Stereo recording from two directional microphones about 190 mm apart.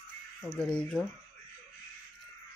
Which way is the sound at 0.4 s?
5° left (ahead or behind).